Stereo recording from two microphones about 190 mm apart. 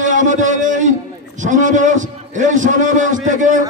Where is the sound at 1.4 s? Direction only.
40° right (ahead or behind).